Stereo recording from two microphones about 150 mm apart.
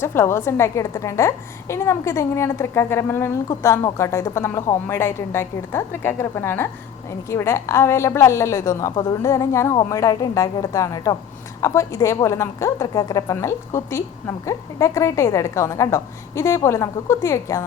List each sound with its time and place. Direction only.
0.0 s a woman's voice: 15° left (ahead or behind)